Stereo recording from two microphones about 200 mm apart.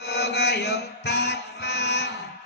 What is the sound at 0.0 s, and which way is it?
Mantra, 55° left (ahead or behind).